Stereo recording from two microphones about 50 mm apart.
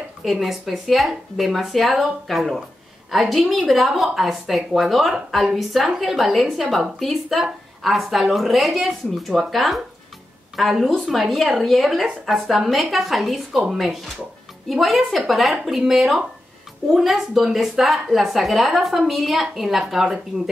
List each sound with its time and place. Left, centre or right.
0.2 s a woman's voice: centre